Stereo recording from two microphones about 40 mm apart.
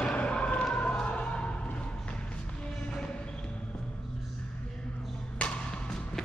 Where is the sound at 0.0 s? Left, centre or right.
Left.